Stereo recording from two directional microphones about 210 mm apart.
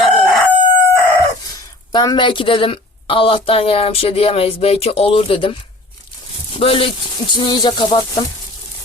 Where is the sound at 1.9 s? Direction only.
20° left (ahead or behind).